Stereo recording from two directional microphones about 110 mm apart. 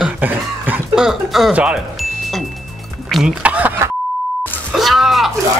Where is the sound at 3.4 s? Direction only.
10° right (ahead or behind).